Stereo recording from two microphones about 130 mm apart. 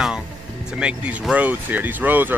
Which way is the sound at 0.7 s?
10° right (ahead or behind).